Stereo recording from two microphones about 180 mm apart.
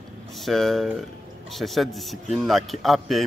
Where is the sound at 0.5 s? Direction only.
Centre (ahead or behind).